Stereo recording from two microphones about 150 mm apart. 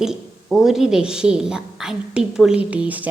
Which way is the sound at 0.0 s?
5° right (ahead or behind).